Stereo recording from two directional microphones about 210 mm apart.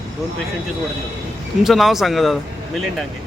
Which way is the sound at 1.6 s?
Centre (ahead or behind).